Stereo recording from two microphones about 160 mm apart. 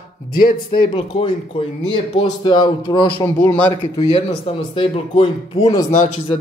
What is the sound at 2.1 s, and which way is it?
Speech, 30° left (ahead or behind).